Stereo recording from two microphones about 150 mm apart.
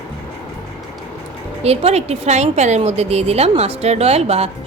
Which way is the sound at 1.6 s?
45° right (ahead or behind).